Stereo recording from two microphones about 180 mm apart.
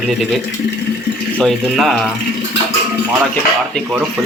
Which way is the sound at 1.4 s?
Centre (ahead or behind).